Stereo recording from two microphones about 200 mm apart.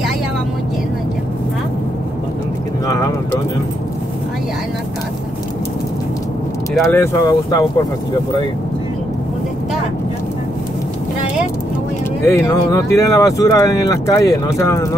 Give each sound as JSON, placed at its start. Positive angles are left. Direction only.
{"t": 2.9, "sound": "clip-clop", "side_deg": 15}
{"t": 6.8, "sound": "speech", "side_deg": 15}
{"t": 12.3, "sound": "speech", "side_deg": 15}